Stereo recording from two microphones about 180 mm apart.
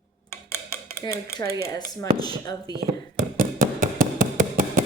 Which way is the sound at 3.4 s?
45° right (ahead or behind).